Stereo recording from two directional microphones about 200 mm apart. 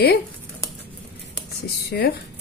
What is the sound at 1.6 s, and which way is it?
Speech, 55° left (ahead or behind).